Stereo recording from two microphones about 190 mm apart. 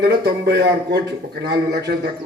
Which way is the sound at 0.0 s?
60° right (ahead or behind).